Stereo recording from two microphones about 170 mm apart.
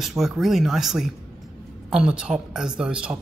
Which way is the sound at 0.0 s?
Centre (ahead or behind).